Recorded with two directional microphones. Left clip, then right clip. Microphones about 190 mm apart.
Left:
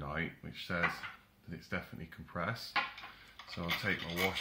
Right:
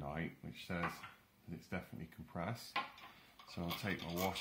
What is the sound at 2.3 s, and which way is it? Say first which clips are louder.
Speech: left 6 dB; 50° right (ahead or behind).